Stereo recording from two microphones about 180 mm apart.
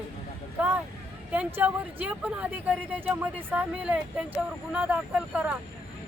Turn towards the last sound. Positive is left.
turn(degrees=-10)  # may be behind; listen again after turning